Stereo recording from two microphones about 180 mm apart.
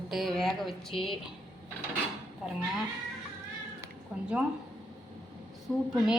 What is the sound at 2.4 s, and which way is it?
Speech, centre (ahead or behind).